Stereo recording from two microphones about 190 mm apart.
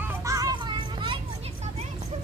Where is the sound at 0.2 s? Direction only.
15° right (ahead or behind).